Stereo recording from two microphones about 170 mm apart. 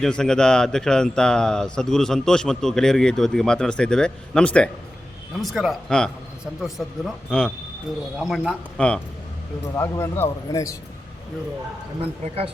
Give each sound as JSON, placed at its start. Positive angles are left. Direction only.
{"t": 0.0, "sound": "speech", "side_deg": 5}
{"t": 9.7, "sound": "speech", "side_deg": 15}